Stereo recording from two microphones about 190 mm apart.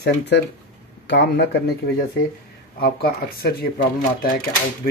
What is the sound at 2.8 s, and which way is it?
Speech, 55° left (ahead or behind).